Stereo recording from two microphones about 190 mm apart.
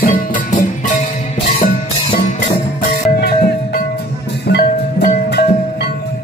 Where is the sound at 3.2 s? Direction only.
55° left (ahead or behind).